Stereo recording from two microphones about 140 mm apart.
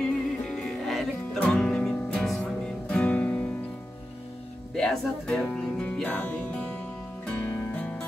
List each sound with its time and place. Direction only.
0.0 s music: 5° left (ahead or behind)
4.7 s music: 5° left (ahead or behind)